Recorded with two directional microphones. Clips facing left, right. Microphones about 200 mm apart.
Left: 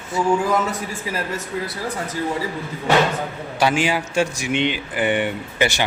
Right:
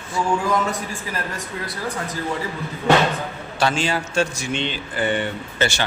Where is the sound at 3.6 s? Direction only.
15° left (ahead or behind).